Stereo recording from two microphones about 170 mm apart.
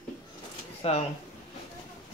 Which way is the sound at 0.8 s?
35° left (ahead or behind).